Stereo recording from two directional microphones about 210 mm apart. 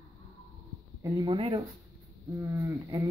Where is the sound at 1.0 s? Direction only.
20° right (ahead or behind).